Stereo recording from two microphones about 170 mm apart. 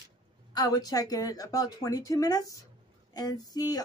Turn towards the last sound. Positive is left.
turn(degrees=20)  # may be behind; listen again after turning